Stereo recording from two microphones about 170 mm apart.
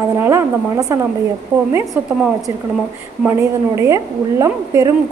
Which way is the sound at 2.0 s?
10° right (ahead or behind).